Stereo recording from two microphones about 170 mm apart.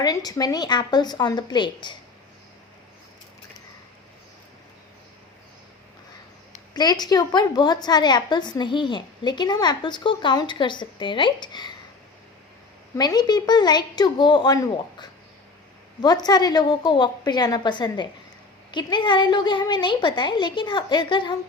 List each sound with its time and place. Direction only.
0.0 s a woman's voice: 20° left (ahead or behind)
6.7 s a woman's voice: 25° left (ahead or behind)
13.0 s a woman's voice: 25° left (ahead or behind)